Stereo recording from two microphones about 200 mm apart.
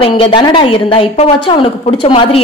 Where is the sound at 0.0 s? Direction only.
25° left (ahead or behind).